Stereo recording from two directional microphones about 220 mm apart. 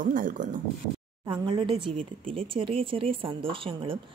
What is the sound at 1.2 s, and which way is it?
Speech, 20° right (ahead or behind).